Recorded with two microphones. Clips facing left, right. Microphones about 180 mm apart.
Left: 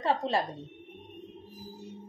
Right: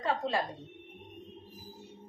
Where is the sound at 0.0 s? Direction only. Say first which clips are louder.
Left 3 dB; 35° left (ahead or behind).